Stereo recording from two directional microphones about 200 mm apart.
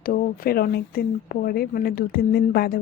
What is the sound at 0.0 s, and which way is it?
Speech, 45° left (ahead or behind).